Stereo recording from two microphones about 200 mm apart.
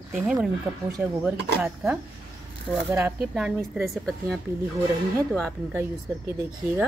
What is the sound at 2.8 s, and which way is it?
Speech, 10° right (ahead or behind).